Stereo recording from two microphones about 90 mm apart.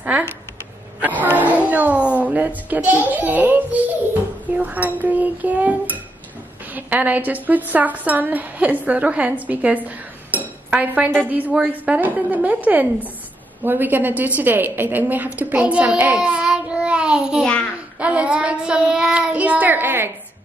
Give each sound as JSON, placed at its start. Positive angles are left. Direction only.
{"t": 1.2, "sound": "a child's voice", "side_deg": -20}
{"t": 16.2, "sound": "child singing", "side_deg": -10}
{"t": 17.9, "sound": "a woman's voice", "side_deg": -15}